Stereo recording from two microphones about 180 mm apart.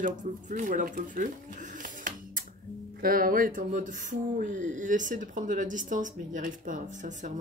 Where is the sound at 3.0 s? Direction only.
50° right (ahead or behind).